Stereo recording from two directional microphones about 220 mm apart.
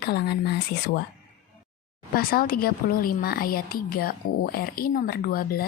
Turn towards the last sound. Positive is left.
turn(degrees=45)  # may be behind; listen again after turning